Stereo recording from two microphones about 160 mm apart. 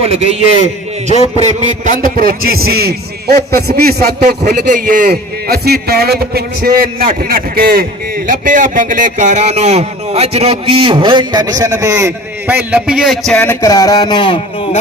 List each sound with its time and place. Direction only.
0.0 s a man's voice: 40° right (ahead or behind); by 4.1 s 75° right (ahead or behind)
4.5 s a man's voice: 55° right (ahead or behind)
8.3 s a man's voice: 55° right (ahead or behind); by 12.5 s 15° right (ahead or behind)
12.7 s speech: 5° right (ahead or behind); by 14.8 s 30° left (ahead or behind)